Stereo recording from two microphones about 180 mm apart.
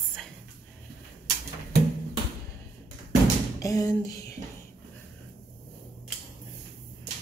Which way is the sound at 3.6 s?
20° left (ahead or behind).